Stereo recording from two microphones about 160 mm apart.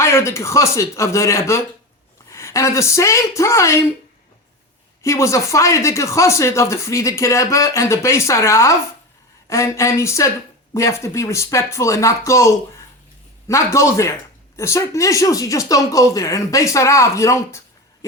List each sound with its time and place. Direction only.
0.0 s speech: 15° left (ahead or behind)
5.0 s speech: 20° left (ahead or behind)